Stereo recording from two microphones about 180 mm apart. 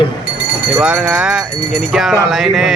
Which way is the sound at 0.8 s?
5° right (ahead or behind).